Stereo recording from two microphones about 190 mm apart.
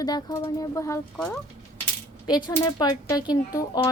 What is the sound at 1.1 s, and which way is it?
Speech, 5° left (ahead or behind).